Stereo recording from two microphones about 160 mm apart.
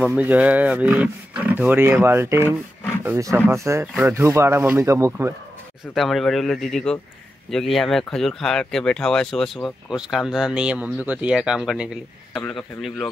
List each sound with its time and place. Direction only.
0.0 s speech: 10° right (ahead or behind)
5.9 s speech: centre (ahead or behind)